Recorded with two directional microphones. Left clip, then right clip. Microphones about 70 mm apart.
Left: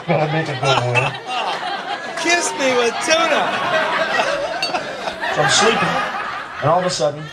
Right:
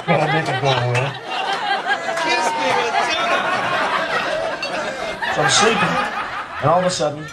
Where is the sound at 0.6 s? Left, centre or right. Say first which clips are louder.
Left 2 dB; left.